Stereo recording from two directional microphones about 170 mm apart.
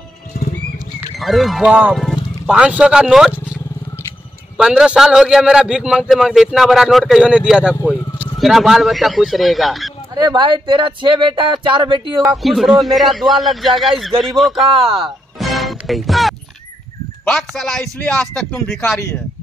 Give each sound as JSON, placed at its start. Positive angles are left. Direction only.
{"t": 1.2, "sound": "a man's voice", "side_deg": 0}
{"t": 4.6, "sound": "a man's voice", "side_deg": -5}
{"t": 10.1, "sound": "speech", "side_deg": -25}
{"t": 12.4, "sound": "a man's voice", "side_deg": 0}
{"t": 14.7, "sound": "speech", "side_deg": -30}
{"t": 15.0, "sound": "music", "side_deg": 0}
{"t": 17.2, "sound": "a man's voice", "side_deg": 5}
{"t": 18.8, "sound": "speech", "side_deg": 15}